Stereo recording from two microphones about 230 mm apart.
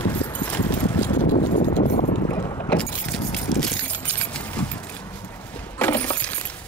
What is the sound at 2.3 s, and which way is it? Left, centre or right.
Boat, centre.